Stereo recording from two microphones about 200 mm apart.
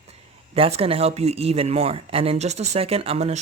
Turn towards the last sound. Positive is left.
turn(degrees=-30)  # may be behind; listen again after turning